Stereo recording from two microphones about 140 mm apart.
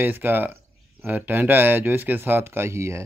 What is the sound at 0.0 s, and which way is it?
Speech, 15° right (ahead or behind).